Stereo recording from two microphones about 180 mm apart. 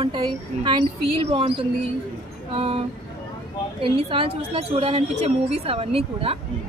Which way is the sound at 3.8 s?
30° right (ahead or behind).